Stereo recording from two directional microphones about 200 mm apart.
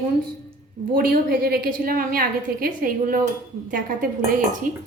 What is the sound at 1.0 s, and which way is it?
A woman's voice, 50° right (ahead or behind).